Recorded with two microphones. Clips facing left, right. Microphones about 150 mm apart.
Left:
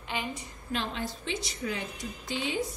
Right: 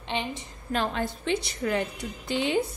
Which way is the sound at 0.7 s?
50° right (ahead or behind).